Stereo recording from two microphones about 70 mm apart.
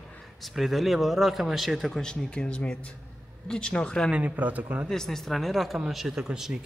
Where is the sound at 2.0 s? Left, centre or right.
Centre.